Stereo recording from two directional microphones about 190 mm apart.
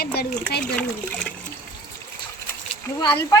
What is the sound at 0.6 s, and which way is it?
Speech, 5° left (ahead or behind).